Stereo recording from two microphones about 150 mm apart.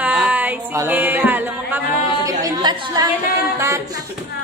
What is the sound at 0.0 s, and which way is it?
Music, 10° right (ahead or behind).